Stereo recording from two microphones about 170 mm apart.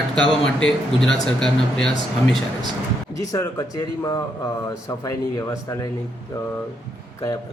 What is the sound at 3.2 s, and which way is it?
Speech, 20° left (ahead or behind).